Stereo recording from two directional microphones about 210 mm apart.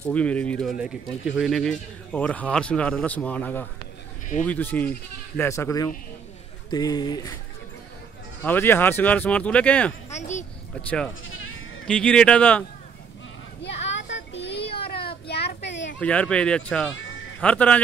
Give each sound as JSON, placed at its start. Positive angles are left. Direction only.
{"t": 0.0, "sound": "speech", "side_deg": 5}
{"t": 8.5, "sound": "speech", "side_deg": 10}
{"t": 10.1, "sound": "a child's voice", "side_deg": 35}
{"t": 11.9, "sound": "speech", "side_deg": 5}
{"t": 13.6, "sound": "a sound", "side_deg": 55}
{"t": 16.0, "sound": "speech", "side_deg": 5}